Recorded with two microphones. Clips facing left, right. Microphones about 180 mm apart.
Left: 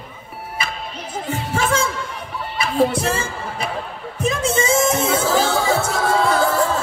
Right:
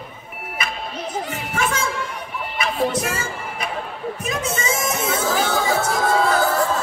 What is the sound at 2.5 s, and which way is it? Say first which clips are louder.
Speech: left 4 dB; 30° left (ahead or behind).